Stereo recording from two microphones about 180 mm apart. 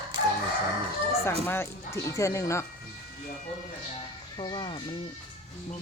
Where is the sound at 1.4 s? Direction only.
15° left (ahead or behind).